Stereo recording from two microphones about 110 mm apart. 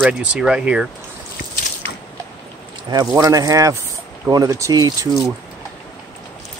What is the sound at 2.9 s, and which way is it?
Speech, 35° right (ahead or behind).